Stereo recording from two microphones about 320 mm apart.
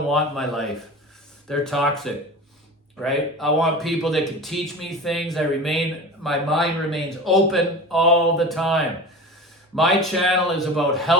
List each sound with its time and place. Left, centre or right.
0.1 s speech: centre